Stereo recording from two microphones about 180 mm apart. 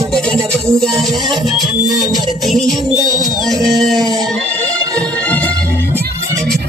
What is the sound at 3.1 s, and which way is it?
Music, 20° right (ahead or behind).